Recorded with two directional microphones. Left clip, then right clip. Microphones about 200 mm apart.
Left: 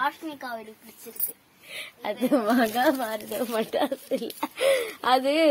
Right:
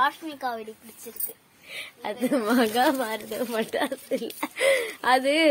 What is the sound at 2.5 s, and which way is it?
Speech, 15° right (ahead or behind).